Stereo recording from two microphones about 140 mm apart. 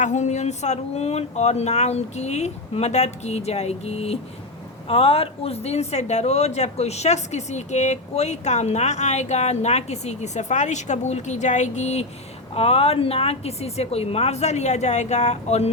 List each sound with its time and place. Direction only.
0.0 s speech: 55° left (ahead or behind)